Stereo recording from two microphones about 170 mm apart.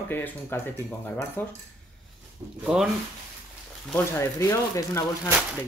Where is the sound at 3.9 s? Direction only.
15° left (ahead or behind).